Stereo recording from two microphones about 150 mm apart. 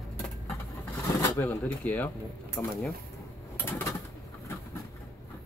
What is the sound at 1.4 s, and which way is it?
Speech, 10° left (ahead or behind).